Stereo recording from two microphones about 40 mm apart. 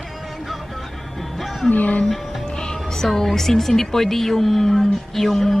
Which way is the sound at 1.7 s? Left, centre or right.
Left.